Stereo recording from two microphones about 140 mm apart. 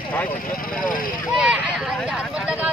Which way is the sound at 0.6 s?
80° left.